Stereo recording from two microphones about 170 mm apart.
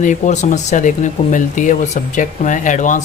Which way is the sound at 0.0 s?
45° left (ahead or behind).